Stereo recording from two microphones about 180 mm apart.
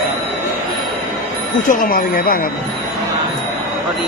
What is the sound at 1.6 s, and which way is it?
Speech, 50° left (ahead or behind).